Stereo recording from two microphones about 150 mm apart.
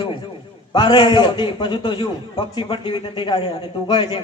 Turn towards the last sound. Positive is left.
turn(degrees=30)  # may be behind; listen again after turning